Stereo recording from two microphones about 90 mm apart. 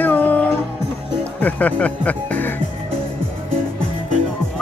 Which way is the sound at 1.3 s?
20° left (ahead or behind).